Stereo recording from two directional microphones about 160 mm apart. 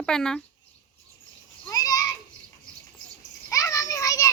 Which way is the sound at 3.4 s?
20° left (ahead or behind).